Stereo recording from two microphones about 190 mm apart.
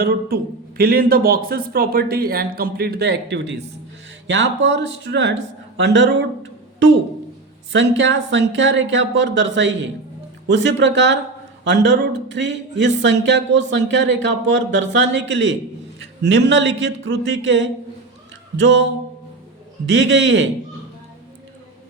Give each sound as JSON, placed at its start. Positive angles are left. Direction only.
{"t": 0.0, "sound": "speech", "side_deg": -50}
{"t": 7.7, "sound": "speech", "side_deg": -70}
{"t": 19.9, "sound": "speech", "side_deg": -70}